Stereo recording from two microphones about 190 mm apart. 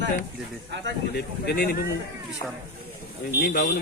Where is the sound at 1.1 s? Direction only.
55° left (ahead or behind).